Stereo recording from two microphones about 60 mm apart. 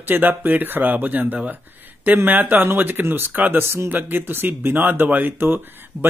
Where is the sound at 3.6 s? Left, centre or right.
Right.